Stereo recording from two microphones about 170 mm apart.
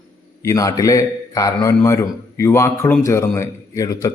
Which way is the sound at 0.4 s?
20° left (ahead or behind).